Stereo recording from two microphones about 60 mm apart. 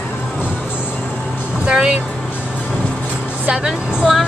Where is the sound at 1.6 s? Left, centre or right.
Centre.